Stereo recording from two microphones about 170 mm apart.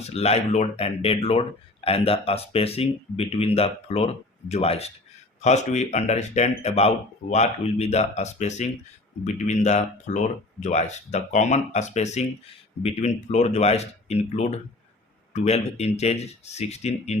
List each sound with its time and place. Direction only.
0.0 s speech: 40° left (ahead or behind)